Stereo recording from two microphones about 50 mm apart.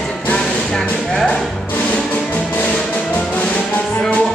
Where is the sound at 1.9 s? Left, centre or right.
Left.